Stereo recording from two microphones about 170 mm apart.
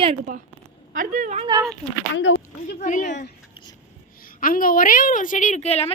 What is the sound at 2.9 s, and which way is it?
Speech, 45° left (ahead or behind).